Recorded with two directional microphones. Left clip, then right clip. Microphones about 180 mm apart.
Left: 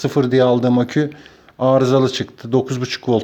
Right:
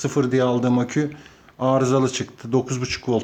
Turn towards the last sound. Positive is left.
turn(degrees=25)  # may be behind; listen again after turning